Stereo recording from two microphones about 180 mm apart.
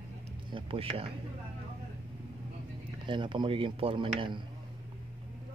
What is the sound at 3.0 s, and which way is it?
Speech, 25° right (ahead or behind).